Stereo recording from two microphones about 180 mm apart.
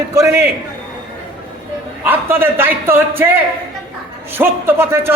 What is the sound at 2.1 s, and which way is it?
A man's voice, 10° right (ahead or behind).